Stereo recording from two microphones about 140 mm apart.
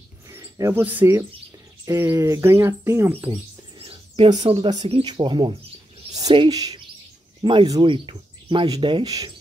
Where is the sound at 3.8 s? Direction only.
45° right (ahead or behind).